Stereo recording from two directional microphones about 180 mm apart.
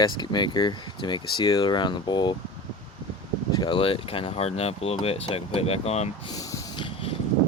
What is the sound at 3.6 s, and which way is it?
Speech, 30° left (ahead or behind).